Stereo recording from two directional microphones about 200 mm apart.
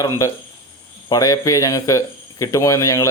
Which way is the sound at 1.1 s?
15° left (ahead or behind).